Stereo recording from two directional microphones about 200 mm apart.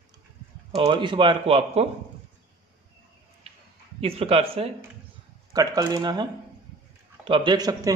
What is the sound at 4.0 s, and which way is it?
Speech, 30° right (ahead or behind).